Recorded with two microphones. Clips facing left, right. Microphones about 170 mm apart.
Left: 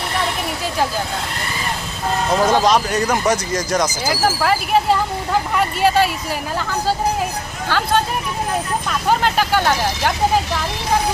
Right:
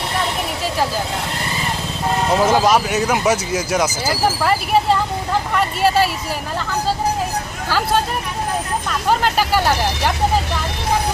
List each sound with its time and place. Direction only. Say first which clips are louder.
2.3 s speech: even; 5° right (ahead or behind)
9.0 s speech: even; 5° right (ahead or behind)